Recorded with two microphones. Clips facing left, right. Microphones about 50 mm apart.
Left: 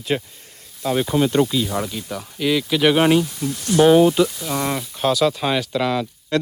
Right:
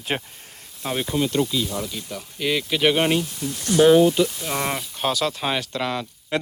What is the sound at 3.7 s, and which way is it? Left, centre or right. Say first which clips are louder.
Speech: left 2 dB; centre.